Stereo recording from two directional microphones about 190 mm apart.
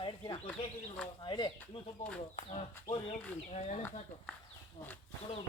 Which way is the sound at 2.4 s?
35° left (ahead or behind).